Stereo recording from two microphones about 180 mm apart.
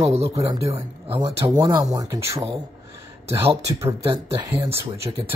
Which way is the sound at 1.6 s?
20° right (ahead or behind).